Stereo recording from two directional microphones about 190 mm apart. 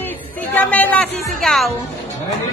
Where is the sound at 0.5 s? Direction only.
10° left (ahead or behind).